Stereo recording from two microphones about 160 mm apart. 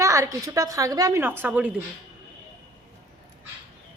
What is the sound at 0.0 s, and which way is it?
A woman's voice, 20° right (ahead or behind).